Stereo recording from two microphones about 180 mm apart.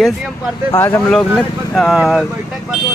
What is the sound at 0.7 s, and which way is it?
Speech, 10° left (ahead or behind).